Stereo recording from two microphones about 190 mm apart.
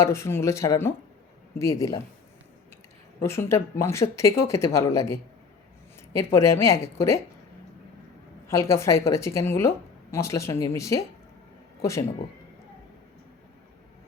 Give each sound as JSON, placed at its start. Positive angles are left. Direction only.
{"t": 0.0, "sound": "a woman's voice", "side_deg": 15}
{"t": 3.2, "sound": "a woman's voice", "side_deg": 15}
{"t": 8.4, "sound": "a woman's voice", "side_deg": 15}